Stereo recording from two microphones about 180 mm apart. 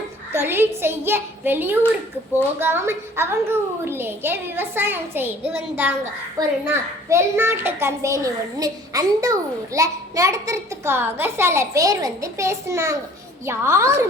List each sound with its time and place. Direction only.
0.3 s a child's voice: 10° right (ahead or behind)